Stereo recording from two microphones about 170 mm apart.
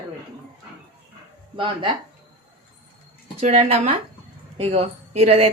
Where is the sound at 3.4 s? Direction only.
40° right (ahead or behind).